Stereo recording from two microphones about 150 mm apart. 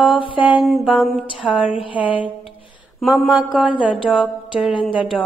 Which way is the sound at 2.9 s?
Centre (ahead or behind).